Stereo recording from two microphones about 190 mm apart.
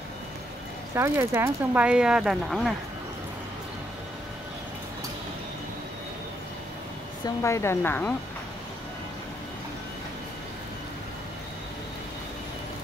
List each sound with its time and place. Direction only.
0.9 s speech: 15° right (ahead or behind)
7.4 s speech: 15° left (ahead or behind)